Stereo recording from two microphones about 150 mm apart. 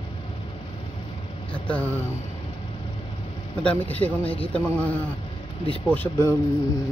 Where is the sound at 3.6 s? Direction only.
10° left (ahead or behind).